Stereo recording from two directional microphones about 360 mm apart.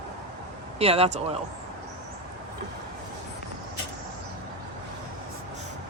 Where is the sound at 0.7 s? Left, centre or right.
Centre.